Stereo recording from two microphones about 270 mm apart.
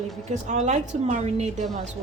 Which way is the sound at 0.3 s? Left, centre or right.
Right.